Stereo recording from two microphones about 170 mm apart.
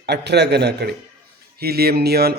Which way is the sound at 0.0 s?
80° right.